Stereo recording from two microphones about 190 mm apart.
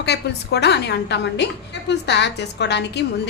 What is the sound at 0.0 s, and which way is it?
A woman's voice, 60° left (ahead or behind).